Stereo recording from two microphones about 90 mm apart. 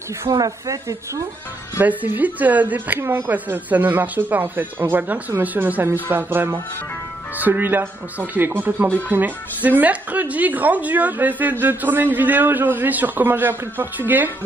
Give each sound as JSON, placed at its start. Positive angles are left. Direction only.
{"t": 0.3, "sound": "a woman's voice", "side_deg": -40}
{"t": 1.8, "sound": "a man's voice", "side_deg": -20}